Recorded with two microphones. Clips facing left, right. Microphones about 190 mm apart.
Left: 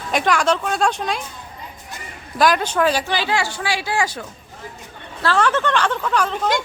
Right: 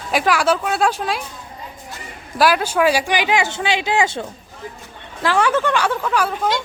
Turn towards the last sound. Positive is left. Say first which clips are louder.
# right 1 dB
turn(degrees=-10)  # may be behind; listen again after turning